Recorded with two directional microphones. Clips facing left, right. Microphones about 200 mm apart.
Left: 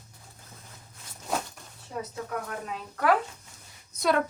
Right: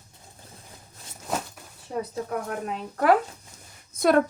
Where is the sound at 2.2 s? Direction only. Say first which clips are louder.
Right 4 dB; 40° right (ahead or behind).